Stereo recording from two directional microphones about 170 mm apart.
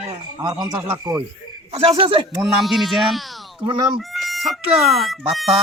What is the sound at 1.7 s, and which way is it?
Speech, 35° right (ahead or behind).